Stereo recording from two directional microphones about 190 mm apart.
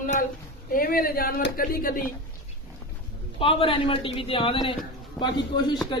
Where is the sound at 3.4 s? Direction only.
30° left (ahead or behind).